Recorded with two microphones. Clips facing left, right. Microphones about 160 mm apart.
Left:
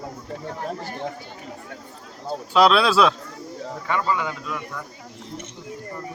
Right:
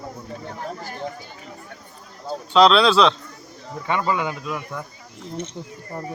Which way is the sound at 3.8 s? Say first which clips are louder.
Right 2 dB; 20° right (ahead or behind).